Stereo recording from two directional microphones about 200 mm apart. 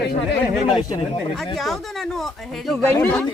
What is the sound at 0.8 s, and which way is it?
Speech, 20° left (ahead or behind).